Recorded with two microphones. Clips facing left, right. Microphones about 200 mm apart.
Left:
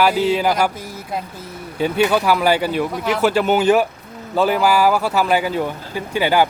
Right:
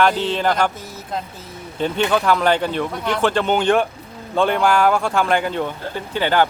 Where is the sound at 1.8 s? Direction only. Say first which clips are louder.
Left 2 dB; 10° left (ahead or behind).